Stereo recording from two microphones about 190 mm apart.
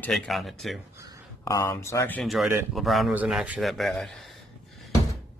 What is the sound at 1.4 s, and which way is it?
A man's voice, 15° left (ahead or behind).